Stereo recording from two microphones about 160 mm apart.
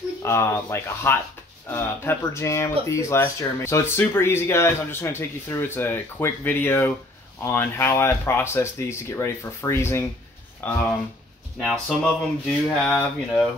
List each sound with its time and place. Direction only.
0.2 s speech: 15° left (ahead or behind)
11.6 s speech: centre (ahead or behind)